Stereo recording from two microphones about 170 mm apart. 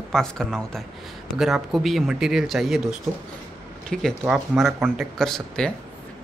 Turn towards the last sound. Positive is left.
turn(degrees=0)  # may be behind; listen again after turning